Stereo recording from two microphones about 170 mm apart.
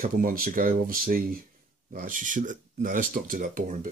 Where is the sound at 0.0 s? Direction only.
55° right (ahead or behind).